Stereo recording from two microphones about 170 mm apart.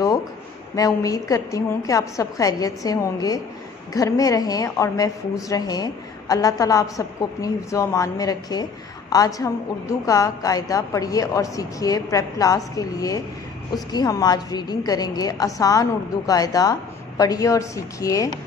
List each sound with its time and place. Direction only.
0.7 s a woman's voice: 20° left (ahead or behind)